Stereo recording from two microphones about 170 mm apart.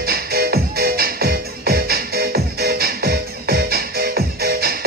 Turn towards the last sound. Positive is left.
turn(degrees=-65)  # may be behind; listen again after turning